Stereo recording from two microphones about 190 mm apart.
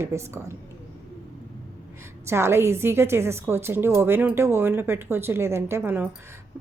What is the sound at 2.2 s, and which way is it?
Speech, 15° right (ahead or behind).